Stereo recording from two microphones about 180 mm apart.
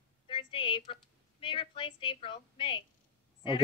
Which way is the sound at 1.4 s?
30° left (ahead or behind).